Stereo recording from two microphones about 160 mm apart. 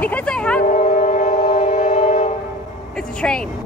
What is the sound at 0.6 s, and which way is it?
Train, 50° left (ahead or behind).